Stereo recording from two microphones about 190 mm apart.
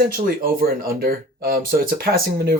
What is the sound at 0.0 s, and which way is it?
Speech, 50° right (ahead or behind).